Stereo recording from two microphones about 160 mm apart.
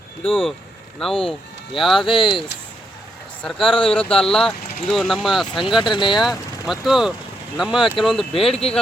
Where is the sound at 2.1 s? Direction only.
30° left (ahead or behind).